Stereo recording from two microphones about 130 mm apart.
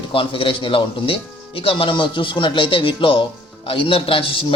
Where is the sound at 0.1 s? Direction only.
40° left (ahead or behind).